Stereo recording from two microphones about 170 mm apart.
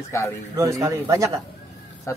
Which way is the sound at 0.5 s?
20° right (ahead or behind).